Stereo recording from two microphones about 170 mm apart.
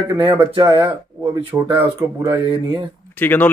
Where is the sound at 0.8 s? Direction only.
15° right (ahead or behind).